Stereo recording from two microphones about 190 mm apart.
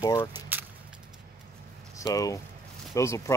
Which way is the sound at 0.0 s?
20° left (ahead or behind).